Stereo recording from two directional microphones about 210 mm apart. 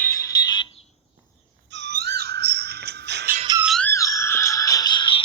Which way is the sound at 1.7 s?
55° right (ahead or behind).